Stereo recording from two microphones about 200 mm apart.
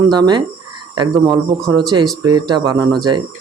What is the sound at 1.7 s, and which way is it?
Speech, 20° right (ahead or behind).